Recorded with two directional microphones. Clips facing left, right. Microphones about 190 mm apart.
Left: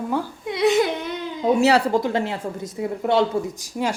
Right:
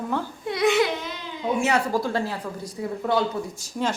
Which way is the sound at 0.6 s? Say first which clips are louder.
Left 2 dB; 35° left (ahead or behind).